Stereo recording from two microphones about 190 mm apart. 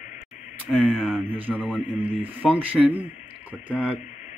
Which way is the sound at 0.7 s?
Centre (ahead or behind).